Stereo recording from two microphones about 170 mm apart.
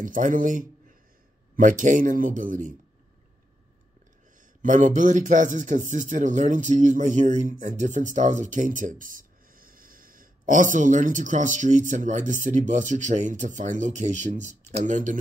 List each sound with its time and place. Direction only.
0.0 s a man's voice: 50° right (ahead or behind)
4.6 s a man's voice: 50° right (ahead or behind)